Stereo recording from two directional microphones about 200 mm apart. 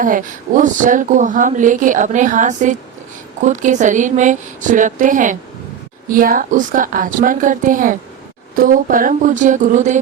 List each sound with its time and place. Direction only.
0.0 s speech: 40° right (ahead or behind)